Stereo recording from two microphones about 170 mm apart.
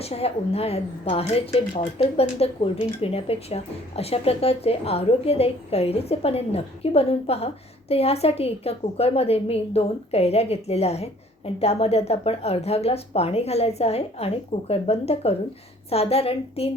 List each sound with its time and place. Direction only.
0.0 s speech: 35° left (ahead or behind)